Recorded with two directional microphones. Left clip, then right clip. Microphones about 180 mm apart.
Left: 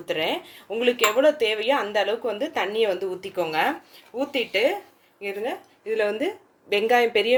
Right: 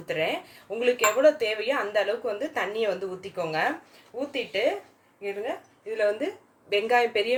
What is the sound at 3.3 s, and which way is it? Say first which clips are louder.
A woman's voice: left 3 dB; 40° left (ahead or behind).